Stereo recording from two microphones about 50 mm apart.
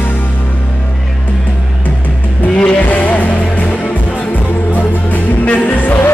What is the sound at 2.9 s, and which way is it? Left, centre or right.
Music, left.